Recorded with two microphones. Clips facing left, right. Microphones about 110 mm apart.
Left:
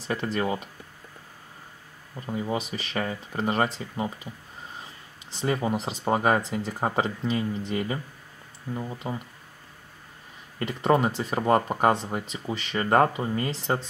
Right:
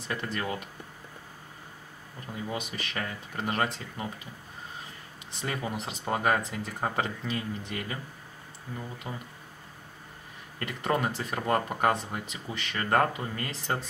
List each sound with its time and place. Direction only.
0.0 s speech: 30° left (ahead or behind)
2.2 s speech: 25° left (ahead or behind)
5.3 s speech: 30° left (ahead or behind)
10.6 s speech: 30° left (ahead or behind)